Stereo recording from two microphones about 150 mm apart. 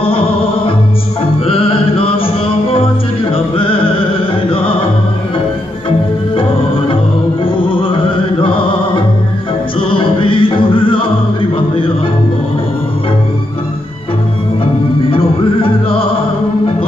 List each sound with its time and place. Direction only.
1.5 s music: 35° left (ahead or behind)
7.4 s music: 35° left (ahead or behind)
15.0 s music: 35° left (ahead or behind)